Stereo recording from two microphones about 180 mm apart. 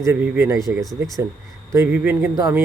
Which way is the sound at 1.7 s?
10° right (ahead or behind).